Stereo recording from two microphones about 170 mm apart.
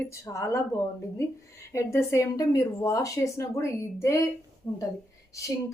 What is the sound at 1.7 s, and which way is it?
A woman's voice, 15° left (ahead or behind).